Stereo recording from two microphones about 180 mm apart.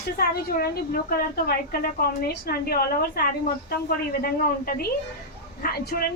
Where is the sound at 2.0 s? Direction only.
60° left (ahead or behind).